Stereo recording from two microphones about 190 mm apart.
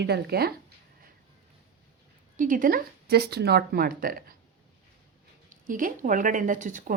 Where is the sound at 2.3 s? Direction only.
45° right (ahead or behind).